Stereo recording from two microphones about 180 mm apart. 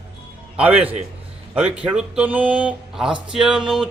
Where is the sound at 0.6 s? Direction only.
10° right (ahead or behind).